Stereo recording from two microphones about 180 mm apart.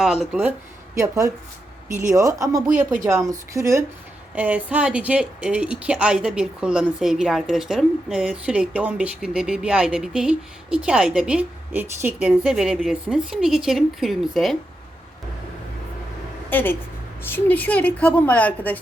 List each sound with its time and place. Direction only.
0.0 s speech: centre (ahead or behind)
0.9 s a woman's voice: 15° right (ahead or behind); by 14.5 s centre (ahead or behind)
16.5 s a woman's voice: 10° left (ahead or behind)